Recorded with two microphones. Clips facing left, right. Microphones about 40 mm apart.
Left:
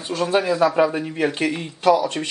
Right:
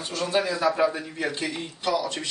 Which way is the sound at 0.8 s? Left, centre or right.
Left.